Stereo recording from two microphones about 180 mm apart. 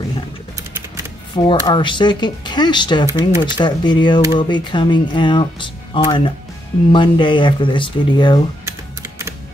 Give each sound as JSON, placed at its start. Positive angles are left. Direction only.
{"t": 1.3, "sound": "speech", "side_deg": 25}